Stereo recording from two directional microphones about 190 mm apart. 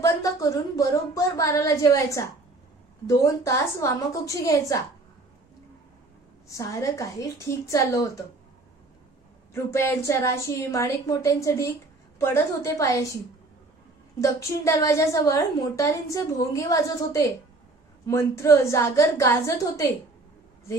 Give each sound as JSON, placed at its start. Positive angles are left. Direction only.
{"t": 0.0, "sound": "a woman's voice", "side_deg": 15}
{"t": 6.5, "sound": "a woman's voice", "side_deg": 15}
{"t": 9.5, "sound": "a woman's voice", "side_deg": 15}
{"t": 14.2, "sound": "a woman's voice", "side_deg": 15}